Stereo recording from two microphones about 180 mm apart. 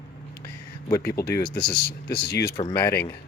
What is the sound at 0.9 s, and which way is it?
Speech, 15° left (ahead or behind).